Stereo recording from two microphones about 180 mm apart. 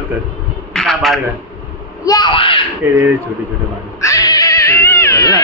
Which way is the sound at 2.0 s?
25° left (ahead or behind).